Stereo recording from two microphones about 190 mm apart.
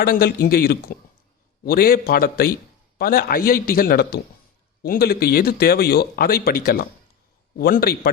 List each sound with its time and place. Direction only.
0.0 s a man's voice: 55° left (ahead or behind)